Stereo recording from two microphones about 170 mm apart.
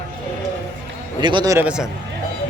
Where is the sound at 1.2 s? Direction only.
25° right (ahead or behind).